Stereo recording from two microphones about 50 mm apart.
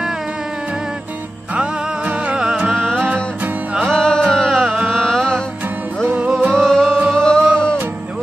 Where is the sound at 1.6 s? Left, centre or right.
Centre.